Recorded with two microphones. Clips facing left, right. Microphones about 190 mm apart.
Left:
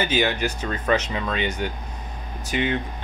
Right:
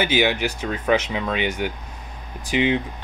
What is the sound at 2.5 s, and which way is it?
Speech, 90° right.